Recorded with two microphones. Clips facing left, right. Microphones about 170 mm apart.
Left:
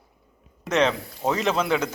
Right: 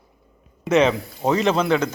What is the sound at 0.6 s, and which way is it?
Speech, 5° right (ahead or behind).